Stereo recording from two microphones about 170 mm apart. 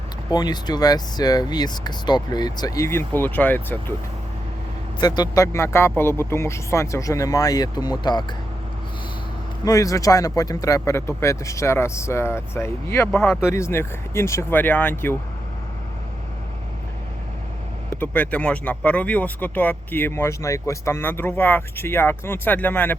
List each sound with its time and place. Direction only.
0.3 s speech: 25° left (ahead or behind)
4.9 s speech: 25° left (ahead or behind)
9.6 s speech: 20° left (ahead or behind)
17.9 s speech: 10° left (ahead or behind)